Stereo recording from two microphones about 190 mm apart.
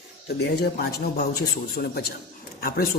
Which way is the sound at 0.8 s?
55° left (ahead or behind).